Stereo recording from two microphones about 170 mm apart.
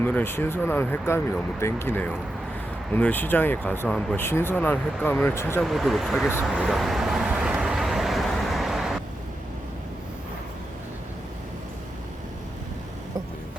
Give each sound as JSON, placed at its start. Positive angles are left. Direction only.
{"t": 0.0, "sound": "speech", "side_deg": 10}
{"t": 5.6, "sound": "speech", "side_deg": 0}
{"t": 6.4, "sound": "vehicle", "side_deg": -5}